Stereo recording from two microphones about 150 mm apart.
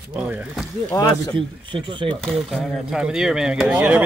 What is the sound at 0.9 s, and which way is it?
Speech, 20° left (ahead or behind).